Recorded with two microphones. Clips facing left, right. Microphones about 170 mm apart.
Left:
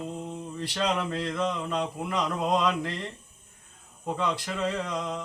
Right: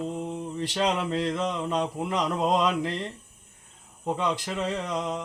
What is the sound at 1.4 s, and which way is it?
Speech, 20° right (ahead or behind).